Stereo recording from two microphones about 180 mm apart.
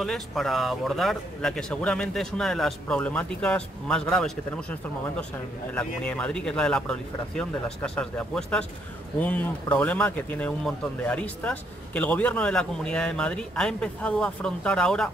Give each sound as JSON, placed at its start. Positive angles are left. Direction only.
{"t": 0.0, "sound": "speech", "side_deg": 0}